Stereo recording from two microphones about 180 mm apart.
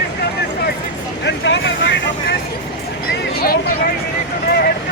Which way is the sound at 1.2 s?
80° left.